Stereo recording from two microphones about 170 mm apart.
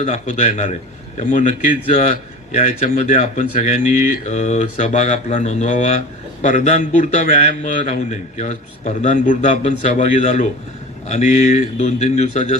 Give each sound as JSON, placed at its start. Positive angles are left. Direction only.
{"t": 0.0, "sound": "a man's voice", "side_deg": 45}